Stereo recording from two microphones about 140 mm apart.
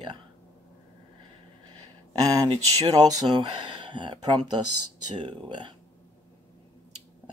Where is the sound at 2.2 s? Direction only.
25° right (ahead or behind).